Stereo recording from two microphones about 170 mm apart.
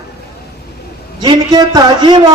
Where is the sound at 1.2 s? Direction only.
25° right (ahead or behind).